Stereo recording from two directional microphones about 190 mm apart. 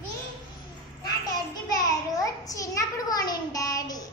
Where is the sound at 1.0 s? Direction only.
20° left (ahead or behind).